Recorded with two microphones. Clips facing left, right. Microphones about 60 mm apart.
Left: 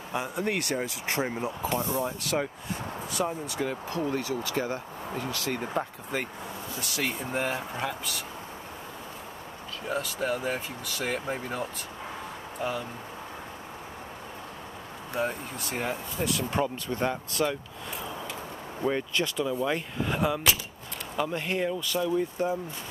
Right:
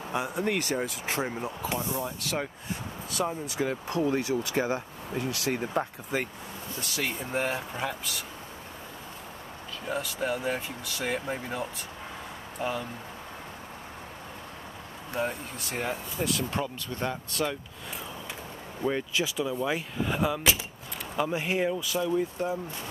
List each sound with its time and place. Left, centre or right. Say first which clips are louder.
0.1 s speech: right 1 dB; centre
9.8 s speech: left 1 dB; centre
15.1 s speech: left 1 dB; centre
18.8 s speech: left 1 dB; centre
21.2 s speech: right 1 dB; centre